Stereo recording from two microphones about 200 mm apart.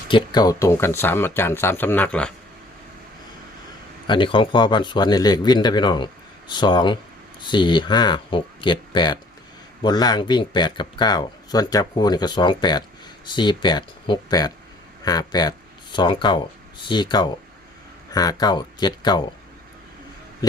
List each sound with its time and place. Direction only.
0.1 s speech: 20° left (ahead or behind); by 2.3 s 5° left (ahead or behind)
4.0 s speech: 25° left (ahead or behind)